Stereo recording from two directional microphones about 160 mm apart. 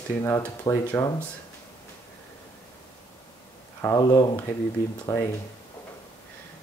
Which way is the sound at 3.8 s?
20° left (ahead or behind).